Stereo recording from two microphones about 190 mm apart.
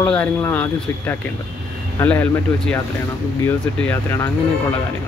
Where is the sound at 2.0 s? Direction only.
10° left (ahead or behind).